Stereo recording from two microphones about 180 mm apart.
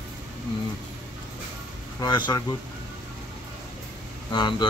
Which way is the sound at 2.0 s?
25° left (ahead or behind).